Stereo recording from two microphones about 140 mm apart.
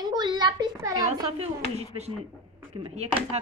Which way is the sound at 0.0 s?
30° right (ahead or behind).